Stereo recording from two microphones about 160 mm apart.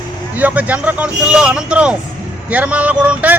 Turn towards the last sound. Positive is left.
turn(degrees=-10)  # may be behind; listen again after turning